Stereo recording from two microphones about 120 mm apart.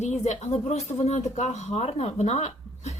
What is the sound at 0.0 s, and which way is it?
Speech, 70° left (ahead or behind).